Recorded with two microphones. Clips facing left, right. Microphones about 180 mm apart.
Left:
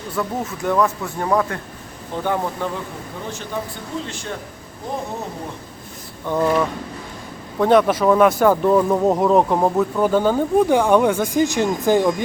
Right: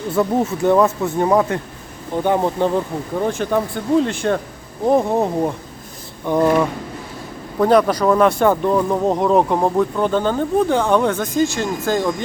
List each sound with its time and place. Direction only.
0.2 s speech: 25° right (ahead or behind)
3.2 s speech: 55° right (ahead or behind)
6.2 s a sound: 15° right (ahead or behind)
7.6 s speech: centre (ahead or behind)